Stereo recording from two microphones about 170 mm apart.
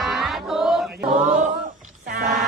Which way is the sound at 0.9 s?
70° right (ahead or behind).